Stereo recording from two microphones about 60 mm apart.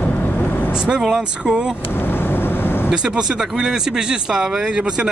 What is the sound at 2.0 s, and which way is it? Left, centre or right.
Vehicle, left.